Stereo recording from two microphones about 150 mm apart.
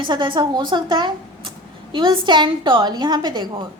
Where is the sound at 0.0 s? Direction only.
35° right (ahead or behind).